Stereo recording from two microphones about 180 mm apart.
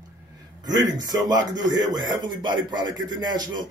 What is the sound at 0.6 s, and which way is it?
A man's voice, 20° right (ahead or behind).